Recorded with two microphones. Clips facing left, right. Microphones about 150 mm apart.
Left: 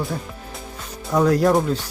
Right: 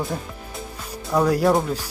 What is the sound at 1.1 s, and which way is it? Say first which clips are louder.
Speech: left 2 dB; 5° right (ahead or behind).